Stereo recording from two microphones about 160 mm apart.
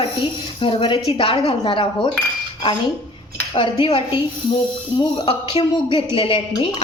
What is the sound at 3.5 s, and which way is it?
Speech, 35° left (ahead or behind).